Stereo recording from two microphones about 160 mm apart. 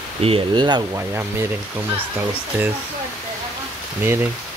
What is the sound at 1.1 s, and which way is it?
Speech, 15° right (ahead or behind).